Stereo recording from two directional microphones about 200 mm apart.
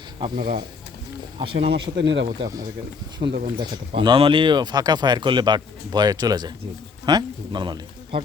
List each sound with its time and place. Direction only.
0.3 s speech: 45° right (ahead or behind)
1.4 s speech: 30° right (ahead or behind)
2.0 s speech: 60° right (ahead or behind)
2.4 s speech: 20° right (ahead or behind)